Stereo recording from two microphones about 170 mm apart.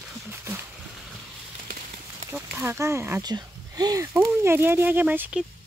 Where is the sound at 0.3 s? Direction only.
15° right (ahead or behind).